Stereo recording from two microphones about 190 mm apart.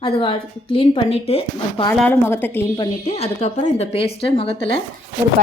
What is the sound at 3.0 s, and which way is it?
Speech, 35° left (ahead or behind).